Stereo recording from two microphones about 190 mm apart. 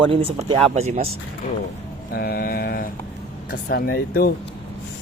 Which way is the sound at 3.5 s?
55° left (ahead or behind).